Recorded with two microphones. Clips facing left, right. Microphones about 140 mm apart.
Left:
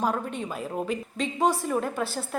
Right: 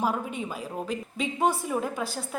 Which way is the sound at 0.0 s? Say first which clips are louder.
Left 1 dB; 5° right (ahead or behind).